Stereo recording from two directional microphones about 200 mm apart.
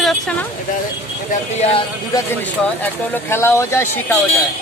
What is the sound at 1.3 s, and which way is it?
Speech, 30° left (ahead or behind).